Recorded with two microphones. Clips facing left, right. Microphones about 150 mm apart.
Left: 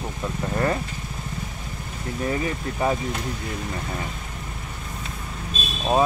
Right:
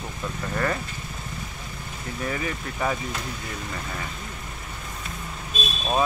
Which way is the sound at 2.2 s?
30° left (ahead or behind).